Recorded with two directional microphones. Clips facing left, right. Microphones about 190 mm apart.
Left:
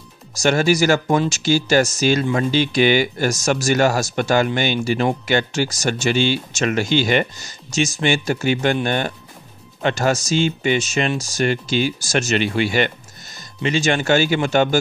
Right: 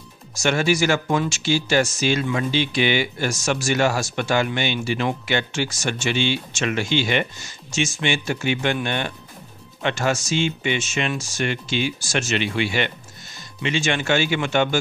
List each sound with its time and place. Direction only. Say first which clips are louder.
0.3 s speech: left 4 dB; 40° left (ahead or behind)